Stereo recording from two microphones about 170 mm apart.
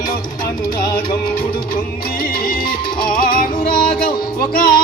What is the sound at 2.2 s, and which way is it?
Music, 55° left (ahead or behind).